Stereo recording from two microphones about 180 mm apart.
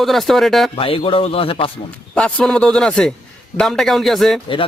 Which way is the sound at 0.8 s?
30° left (ahead or behind).